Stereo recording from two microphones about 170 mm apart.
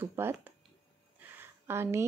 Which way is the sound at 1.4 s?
15° right (ahead or behind).